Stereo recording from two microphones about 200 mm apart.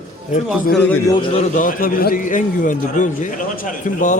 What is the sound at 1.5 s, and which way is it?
A man's voice, 40° left (ahead or behind).